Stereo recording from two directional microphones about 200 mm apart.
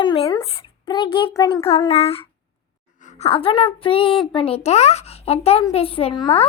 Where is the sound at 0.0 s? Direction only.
25° left (ahead or behind).